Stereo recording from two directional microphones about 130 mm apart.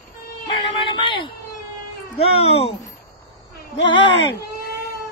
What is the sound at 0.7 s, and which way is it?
Speech, 40° left (ahead or behind).